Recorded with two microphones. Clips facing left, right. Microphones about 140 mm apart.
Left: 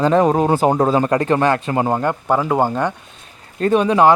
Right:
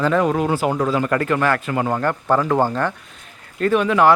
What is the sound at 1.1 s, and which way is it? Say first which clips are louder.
Speech: left 3 dB; 25° left (ahead or behind).